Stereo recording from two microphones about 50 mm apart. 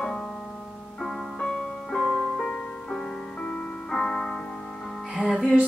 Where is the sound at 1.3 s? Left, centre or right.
Centre.